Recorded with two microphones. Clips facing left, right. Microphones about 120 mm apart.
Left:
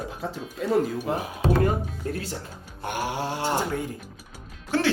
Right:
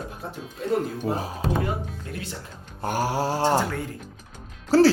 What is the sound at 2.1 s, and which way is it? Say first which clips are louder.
Speech: left 9 dB; 40° left (ahead or behind).